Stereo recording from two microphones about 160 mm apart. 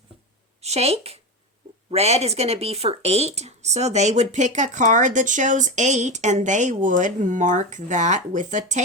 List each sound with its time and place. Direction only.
0.6 s speech: 40° right (ahead or behind)